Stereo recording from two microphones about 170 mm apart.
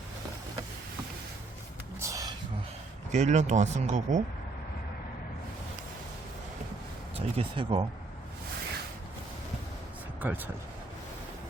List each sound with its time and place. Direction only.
2.0 s a sound: 20° right (ahead or behind)
3.1 s speech: 45° right (ahead or behind)
7.2 s speech: 35° right (ahead or behind)
10.2 s speech: 10° right (ahead or behind)